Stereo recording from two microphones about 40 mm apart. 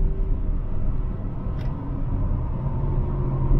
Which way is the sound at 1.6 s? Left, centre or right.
Centre.